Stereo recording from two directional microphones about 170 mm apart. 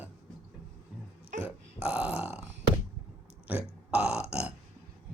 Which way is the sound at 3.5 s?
5° right (ahead or behind).